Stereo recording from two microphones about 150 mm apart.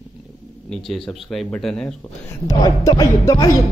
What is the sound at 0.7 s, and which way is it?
Speech, centre (ahead or behind).